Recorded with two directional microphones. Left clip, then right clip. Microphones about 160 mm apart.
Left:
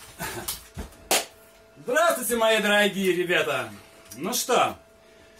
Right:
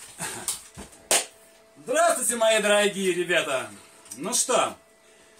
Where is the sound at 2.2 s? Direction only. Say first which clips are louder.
Even; 10° right (ahead or behind).